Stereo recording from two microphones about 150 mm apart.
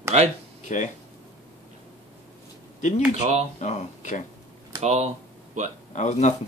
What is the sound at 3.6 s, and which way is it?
Speech, 50° left (ahead or behind).